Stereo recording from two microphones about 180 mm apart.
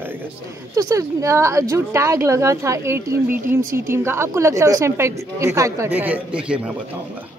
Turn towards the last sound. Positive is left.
turn(degrees=-5)  # may be behind; listen again after turning